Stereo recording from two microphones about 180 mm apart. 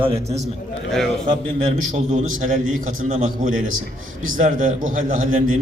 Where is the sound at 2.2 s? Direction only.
45° right (ahead or behind).